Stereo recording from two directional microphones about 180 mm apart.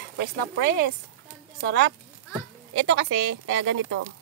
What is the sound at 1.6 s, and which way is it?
Speech, 75° right (ahead or behind).